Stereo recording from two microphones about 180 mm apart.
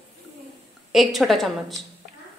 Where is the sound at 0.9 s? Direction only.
Centre (ahead or behind).